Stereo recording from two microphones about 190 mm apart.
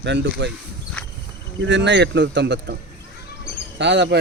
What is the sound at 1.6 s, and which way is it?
A man's voice, 70° right (ahead or behind).